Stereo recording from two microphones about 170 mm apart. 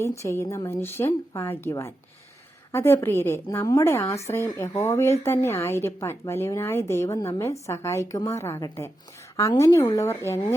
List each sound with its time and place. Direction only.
0.0 s a woman's voice: 15° left (ahead or behind)